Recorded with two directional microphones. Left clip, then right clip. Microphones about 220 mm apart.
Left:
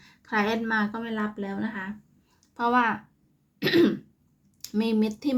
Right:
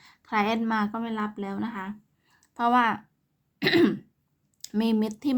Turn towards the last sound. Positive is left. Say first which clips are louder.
# even
turn(degrees=-20)  # may be behind; listen again after turning